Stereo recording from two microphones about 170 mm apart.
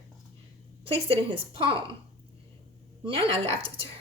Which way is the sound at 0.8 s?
35° right (ahead or behind).